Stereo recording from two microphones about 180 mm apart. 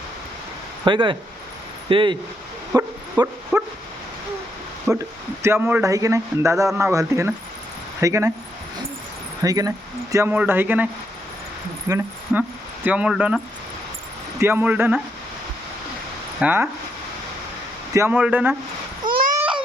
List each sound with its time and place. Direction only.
0.9 s speech: 25° right (ahead or behind)
3.5 s speech: 10° right (ahead or behind)
4.9 s speech: 15° right (ahead or behind)
9.4 s speech: 20° right (ahead or behind)
11.9 s speech: 10° right (ahead or behind)
14.4 s speech: 10° right (ahead or behind)
16.4 s speech: 10° right (ahead or behind)
17.9 s speech: 10° right (ahead or behind)
19.0 s a sound: 50° right (ahead or behind)